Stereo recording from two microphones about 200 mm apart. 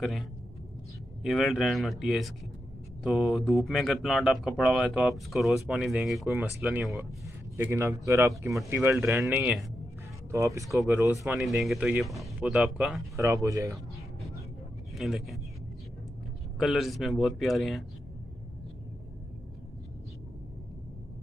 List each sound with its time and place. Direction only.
0.0 s speech: centre (ahead or behind)
13.1 s speech: 15° right (ahead or behind)
14.9 s speech: centre (ahead or behind)
16.5 s speech: centre (ahead or behind)